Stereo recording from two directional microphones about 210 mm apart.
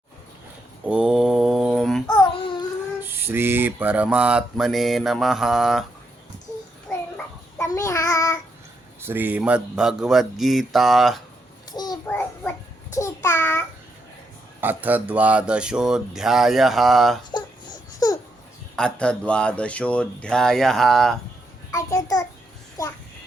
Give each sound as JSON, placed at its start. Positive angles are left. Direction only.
{"t": 0.9, "sound": "mantra", "side_deg": -5}
{"t": 2.1, "sound": "babbling", "side_deg": 25}
{"t": 3.0, "sound": "mantra", "side_deg": -10}
{"t": 7.2, "sound": "child singing", "side_deg": 15}
{"t": 9.0, "sound": "mantra", "side_deg": -10}
{"t": 12.0, "sound": "child singing", "side_deg": 5}
{"t": 14.6, "sound": "mantra", "side_deg": -10}
{"t": 18.0, "sound": "babbling", "side_deg": 20}
{"t": 18.8, "sound": "mantra", "side_deg": 5}
{"t": 21.7, "sound": "a child's voice", "side_deg": 15}